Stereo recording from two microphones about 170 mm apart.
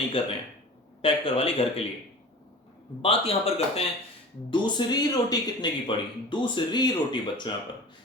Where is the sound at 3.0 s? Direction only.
35° left (ahead or behind).